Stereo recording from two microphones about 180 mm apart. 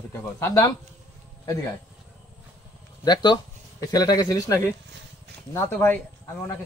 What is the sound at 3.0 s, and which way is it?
A man's voice, 25° left (ahead or behind).